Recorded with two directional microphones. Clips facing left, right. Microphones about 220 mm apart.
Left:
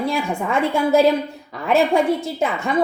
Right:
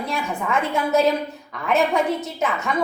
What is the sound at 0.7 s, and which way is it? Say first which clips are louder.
A woman's voice: left 4 dB; 30° left (ahead or behind).